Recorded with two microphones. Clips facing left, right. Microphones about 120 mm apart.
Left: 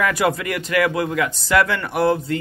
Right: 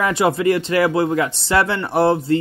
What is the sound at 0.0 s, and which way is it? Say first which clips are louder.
Speech: right 3 dB; 25° right (ahead or behind).